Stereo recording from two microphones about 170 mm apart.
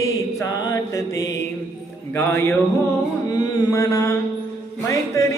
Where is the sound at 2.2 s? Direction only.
15° left (ahead or behind).